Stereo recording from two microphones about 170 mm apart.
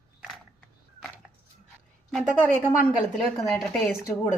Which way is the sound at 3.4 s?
15° left (ahead or behind).